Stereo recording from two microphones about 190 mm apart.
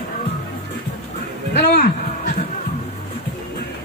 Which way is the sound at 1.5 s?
55° left (ahead or behind).